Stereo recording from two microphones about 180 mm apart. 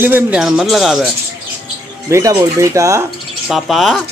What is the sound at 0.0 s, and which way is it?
Speech, 10° right (ahead or behind).